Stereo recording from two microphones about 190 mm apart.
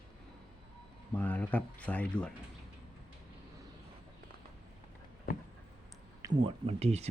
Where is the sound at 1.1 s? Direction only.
10° left (ahead or behind).